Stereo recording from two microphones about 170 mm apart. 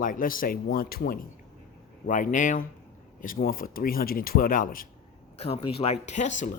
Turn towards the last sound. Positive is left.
turn(degrees=45)  # may be behind; listen again after turning